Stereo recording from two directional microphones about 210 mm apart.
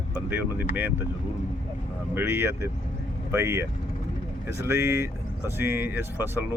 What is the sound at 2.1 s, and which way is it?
Speech, 10° right (ahead or behind).